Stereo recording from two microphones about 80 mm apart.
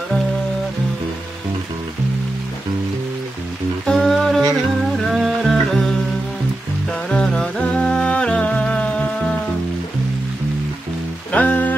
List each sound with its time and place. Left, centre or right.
3.8 s music: centre
7.1 s music: centre
11.3 s music: centre